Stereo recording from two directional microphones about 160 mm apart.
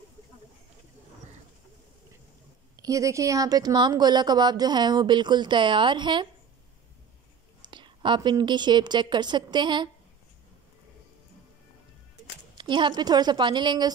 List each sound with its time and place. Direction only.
2.7 s speech: 20° right (ahead or behind)
7.7 s speech: 30° right (ahead or behind)
12.5 s speech: 30° right (ahead or behind)